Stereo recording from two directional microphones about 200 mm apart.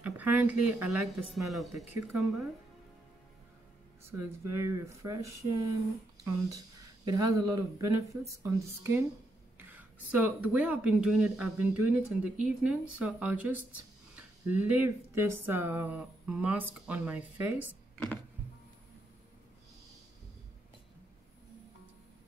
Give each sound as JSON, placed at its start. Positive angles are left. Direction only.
{"t": 0.0, "sound": "speech", "side_deg": -10}
{"t": 4.5, "sound": "speech", "side_deg": -15}
{"t": 7.1, "sound": "speech", "side_deg": -20}
{"t": 17.9, "sound": "a sound", "side_deg": 5}